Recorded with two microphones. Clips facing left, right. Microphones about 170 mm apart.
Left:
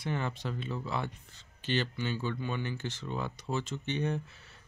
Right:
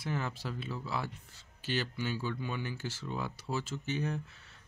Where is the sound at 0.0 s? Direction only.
5° right (ahead or behind).